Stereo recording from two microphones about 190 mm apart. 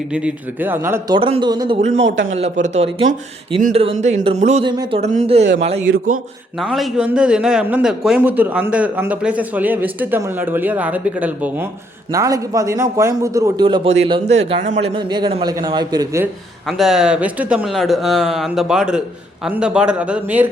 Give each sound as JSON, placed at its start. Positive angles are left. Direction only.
{"t": 0.1, "sound": "a man's voice", "side_deg": -5}
{"t": 1.1, "sound": "a man's voice", "side_deg": -25}
{"t": 2.0, "sound": "a man's voice", "side_deg": -75}
{"t": 2.3, "sound": "speech", "side_deg": -35}
{"t": 4.6, "sound": "a man's voice", "side_deg": -25}
{"t": 4.9, "sound": "speech", "side_deg": -35}
{"t": 5.8, "sound": "a man's voice", "side_deg": -90}
{"t": 6.6, "sound": "a man's voice", "side_deg": 0}
{"t": 13.8, "sound": "a man's voice", "side_deg": -35}
{"t": 16.2, "sound": "speech", "side_deg": 0}